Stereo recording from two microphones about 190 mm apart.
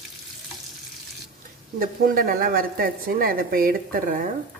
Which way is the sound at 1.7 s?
50° right (ahead or behind).